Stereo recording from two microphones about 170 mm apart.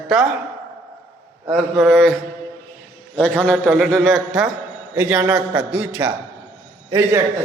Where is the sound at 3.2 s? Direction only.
5° left (ahead or behind); by 7.2 s 15° right (ahead or behind).